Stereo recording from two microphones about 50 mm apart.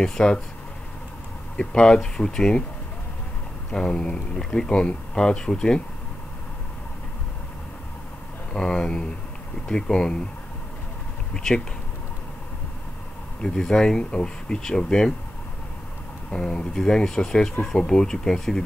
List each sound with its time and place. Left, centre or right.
0.0 s speech: centre
1.6 s speech: centre
3.7 s speech: centre
8.5 s speech: centre
11.3 s speech: centre
13.4 s speech: centre
16.3 s speech: centre